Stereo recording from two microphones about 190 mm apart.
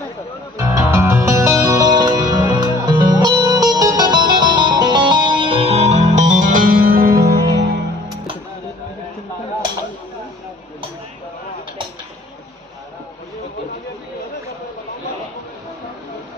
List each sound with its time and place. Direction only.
0.8 s music: 15° right (ahead or behind); by 7.8 s 55° right (ahead or behind)